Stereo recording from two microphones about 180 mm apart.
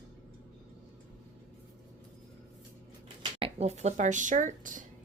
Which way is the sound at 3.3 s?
35° right (ahead or behind).